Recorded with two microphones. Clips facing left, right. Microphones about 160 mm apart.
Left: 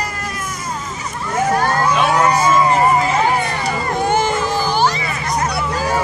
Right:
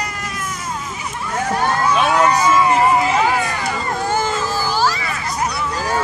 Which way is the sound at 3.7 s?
20° left (ahead or behind).